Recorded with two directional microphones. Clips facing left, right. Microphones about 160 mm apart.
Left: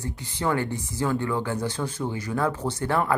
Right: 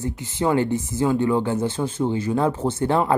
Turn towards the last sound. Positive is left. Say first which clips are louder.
# right 5 dB
turn(degrees=-25)  # may be behind; listen again after turning